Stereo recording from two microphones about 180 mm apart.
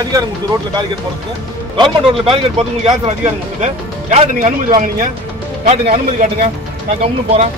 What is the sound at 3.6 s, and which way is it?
Speech, 40° right (ahead or behind).